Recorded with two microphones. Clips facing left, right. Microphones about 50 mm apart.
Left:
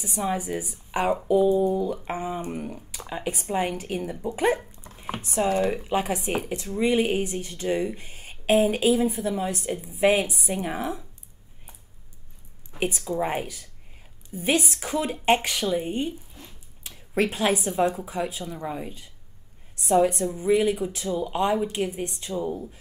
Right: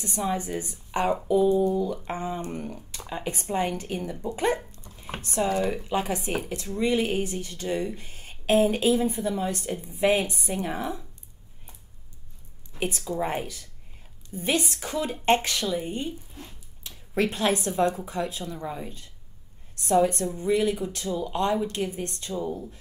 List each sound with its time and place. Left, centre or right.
0.0 s speech: centre
4.7 s a sound: centre
5.2 s speech: centre
8.0 s speech: centre
12.7 s speech: centre